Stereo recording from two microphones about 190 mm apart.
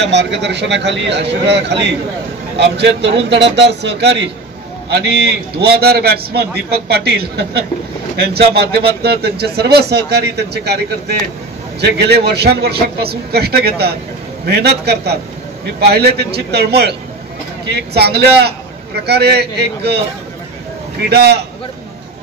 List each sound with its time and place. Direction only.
0.0 s speech: 65° right (ahead or behind)
11.8 s speech: 60° right (ahead or behind)
21.1 s speech: 60° right (ahead or behind)